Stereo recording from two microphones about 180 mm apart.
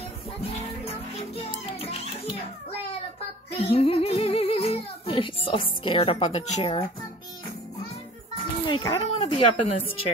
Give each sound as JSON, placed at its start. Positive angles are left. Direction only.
{"t": 1.5, "sound": "music", "side_deg": 30}
{"t": 3.5, "sound": "speech", "side_deg": 30}
{"t": 8.6, "sound": "speech", "side_deg": 30}